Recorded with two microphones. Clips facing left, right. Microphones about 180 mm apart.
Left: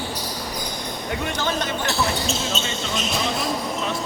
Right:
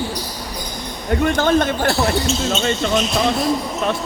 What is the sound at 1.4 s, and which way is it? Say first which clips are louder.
Speech: right 8 dB; 55° right (ahead or behind).